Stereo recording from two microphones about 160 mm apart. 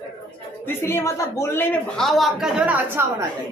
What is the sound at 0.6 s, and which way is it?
Speech, 15° left (ahead or behind).